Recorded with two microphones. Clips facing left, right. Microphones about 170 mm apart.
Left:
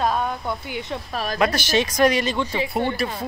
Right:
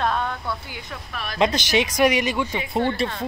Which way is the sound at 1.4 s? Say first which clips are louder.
Right 1 dB; 20° right (ahead or behind).